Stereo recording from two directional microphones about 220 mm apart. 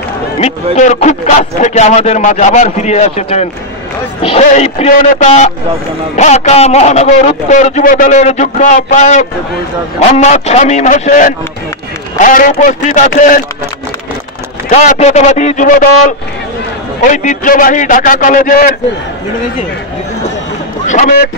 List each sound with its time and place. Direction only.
0.7 s a man's voice: 35° left (ahead or behind)
14.7 s a man's voice: 30° left (ahead or behind)
20.8 s speech: 35° left (ahead or behind)